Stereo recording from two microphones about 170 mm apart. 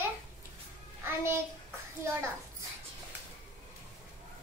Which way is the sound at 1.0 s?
15° right (ahead or behind).